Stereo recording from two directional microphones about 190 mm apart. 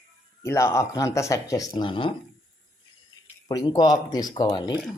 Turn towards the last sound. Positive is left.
turn(degrees=20)  # may be behind; listen again after turning